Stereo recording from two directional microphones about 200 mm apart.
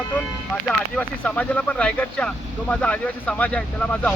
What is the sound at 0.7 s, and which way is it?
Speech, 5° left (ahead or behind).